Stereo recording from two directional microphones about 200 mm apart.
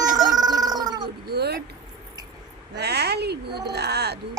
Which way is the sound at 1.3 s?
55° right (ahead or behind).